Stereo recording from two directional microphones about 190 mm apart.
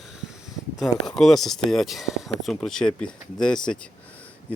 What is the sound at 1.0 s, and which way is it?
Speech, centre (ahead or behind).